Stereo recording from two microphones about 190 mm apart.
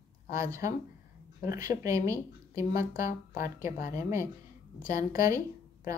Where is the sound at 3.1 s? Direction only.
40° left (ahead or behind).